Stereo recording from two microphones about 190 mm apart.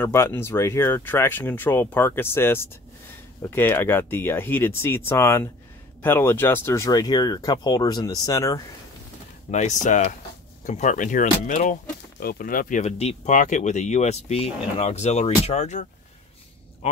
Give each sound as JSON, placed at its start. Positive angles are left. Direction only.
{"t": 0.0, "sound": "speech", "side_deg": 10}
{"t": 9.5, "sound": "speech", "side_deg": 40}